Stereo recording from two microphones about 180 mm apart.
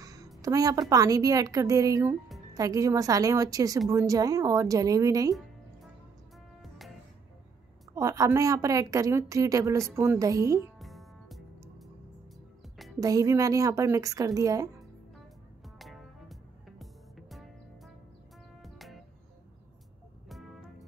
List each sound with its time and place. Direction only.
0.0 s a sound: 20° right (ahead or behind)
0.4 s a woman's voice: 20° right (ahead or behind)
7.9 s a woman's voice: 20° right (ahead or behind)
10.8 s music: centre (ahead or behind)
13.0 s a woman's voice: 20° right (ahead or behind)
15.8 s music: centre (ahead or behind)
20.2 s music: centre (ahead or behind)